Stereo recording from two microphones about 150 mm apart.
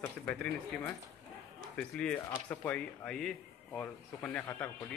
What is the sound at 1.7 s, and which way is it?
A man's voice, 5° left (ahead or behind).